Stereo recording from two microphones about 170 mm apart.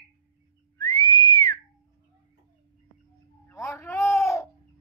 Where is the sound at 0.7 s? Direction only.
20° left (ahead or behind).